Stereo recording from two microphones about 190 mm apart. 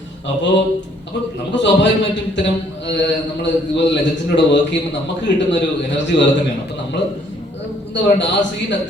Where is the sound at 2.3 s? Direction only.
70° left (ahead or behind).